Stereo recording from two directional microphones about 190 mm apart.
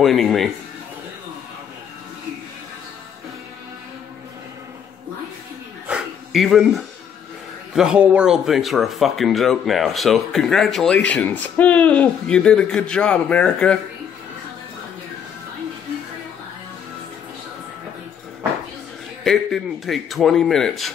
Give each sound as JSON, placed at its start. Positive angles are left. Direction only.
{"t": 0.0, "sound": "speech", "side_deg": 0}
{"t": 5.9, "sound": "a sound", "side_deg": -5}
{"t": 7.7, "sound": "speech", "side_deg": -5}
{"t": 19.2, "sound": "speech", "side_deg": 0}